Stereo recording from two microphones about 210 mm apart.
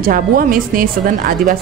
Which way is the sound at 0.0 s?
40° right (ahead or behind).